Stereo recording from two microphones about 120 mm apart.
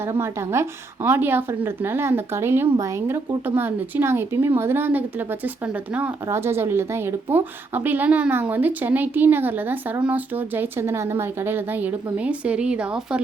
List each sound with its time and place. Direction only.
0.1 s a woman's voice: 20° right (ahead or behind)
6.2 s a woman's voice: 20° right (ahead or behind)